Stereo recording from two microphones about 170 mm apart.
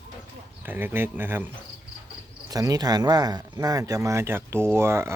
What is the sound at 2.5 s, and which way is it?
Speech, 20° right (ahead or behind).